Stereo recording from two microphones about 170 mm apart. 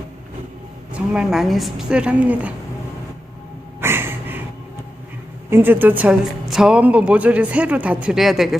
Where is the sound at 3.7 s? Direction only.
15° right (ahead or behind).